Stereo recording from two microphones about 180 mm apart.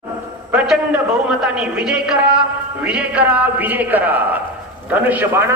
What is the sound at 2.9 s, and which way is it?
A man's voice, 5° right (ahead or behind).